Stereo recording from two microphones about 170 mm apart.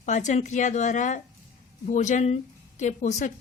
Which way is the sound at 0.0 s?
45° left (ahead or behind).